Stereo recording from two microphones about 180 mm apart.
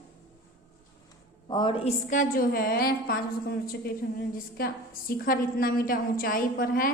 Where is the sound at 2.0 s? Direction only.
50° left (ahead or behind).